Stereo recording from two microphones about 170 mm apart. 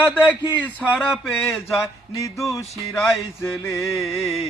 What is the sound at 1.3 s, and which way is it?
Speech, 15° left (ahead or behind).